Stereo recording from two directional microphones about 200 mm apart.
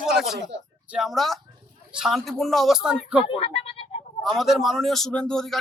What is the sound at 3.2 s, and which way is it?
Speech, 25° left (ahead or behind).